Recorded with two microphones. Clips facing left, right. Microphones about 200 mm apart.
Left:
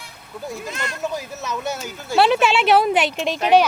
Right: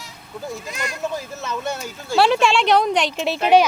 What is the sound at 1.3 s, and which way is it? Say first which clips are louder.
Speech: even; centre (ahead or behind).